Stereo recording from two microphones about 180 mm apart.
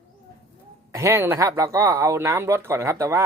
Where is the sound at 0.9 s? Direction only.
15° right (ahead or behind).